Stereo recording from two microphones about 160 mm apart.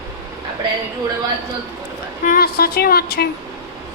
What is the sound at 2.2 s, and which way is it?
Speech, 70° left (ahead or behind).